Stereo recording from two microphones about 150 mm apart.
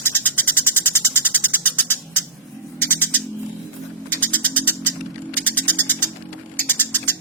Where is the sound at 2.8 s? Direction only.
15° left (ahead or behind).